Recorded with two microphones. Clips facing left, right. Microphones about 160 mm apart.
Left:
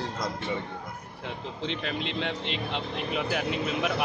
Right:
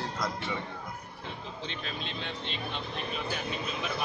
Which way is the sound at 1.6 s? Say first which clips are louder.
Left 8 dB; 75° left (ahead or behind).